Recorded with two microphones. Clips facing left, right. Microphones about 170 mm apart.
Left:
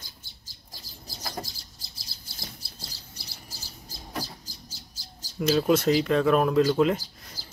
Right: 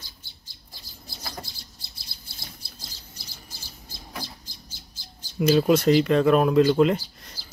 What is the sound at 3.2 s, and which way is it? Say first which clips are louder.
Bird: left 1 dB; 35° left (ahead or behind).